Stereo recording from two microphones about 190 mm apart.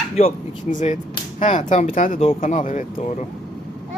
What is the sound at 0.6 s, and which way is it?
A woman's voice, 40° left (ahead or behind).